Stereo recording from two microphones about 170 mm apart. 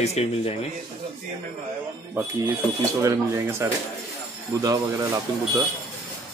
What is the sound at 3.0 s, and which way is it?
Speech, 15° right (ahead or behind).